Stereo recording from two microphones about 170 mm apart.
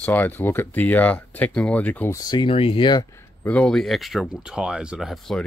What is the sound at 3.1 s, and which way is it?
Speech, 10° left (ahead or behind).